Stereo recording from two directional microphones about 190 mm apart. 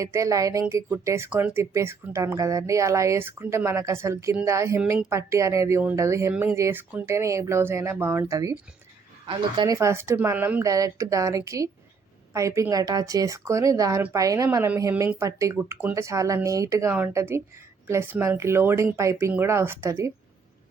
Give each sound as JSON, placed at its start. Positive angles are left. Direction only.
{"t": 0.0, "sound": "speech", "side_deg": -15}